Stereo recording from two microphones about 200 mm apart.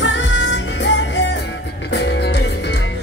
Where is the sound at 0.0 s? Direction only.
65° left (ahead or behind).